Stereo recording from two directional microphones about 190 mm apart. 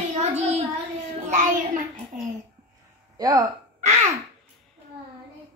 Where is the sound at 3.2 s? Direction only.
20° right (ahead or behind).